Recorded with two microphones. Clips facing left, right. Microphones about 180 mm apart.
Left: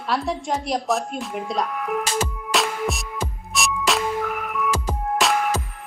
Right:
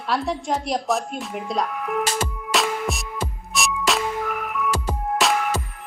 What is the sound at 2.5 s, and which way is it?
Music, centre (ahead or behind).